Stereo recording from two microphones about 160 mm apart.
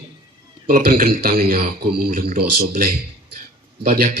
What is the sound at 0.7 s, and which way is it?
A man's voice, 70° right (ahead or behind).